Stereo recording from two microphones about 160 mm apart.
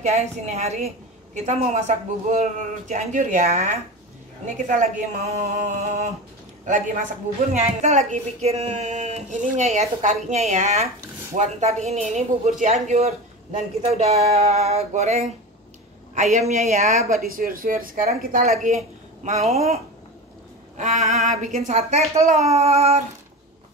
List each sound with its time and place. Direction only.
0.0 s speech: 45° right (ahead or behind)
7.8 s speech: 45° right (ahead or behind)
17.2 s a woman's voice: 60° right (ahead or behind)
19.2 s speech: 40° right (ahead or behind)
20.7 s a sound: 50° right (ahead or behind)
21.3 s speech: 50° right (ahead or behind)